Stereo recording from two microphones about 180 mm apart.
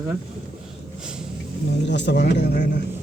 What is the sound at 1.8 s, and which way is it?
Speech, 75° left (ahead or behind).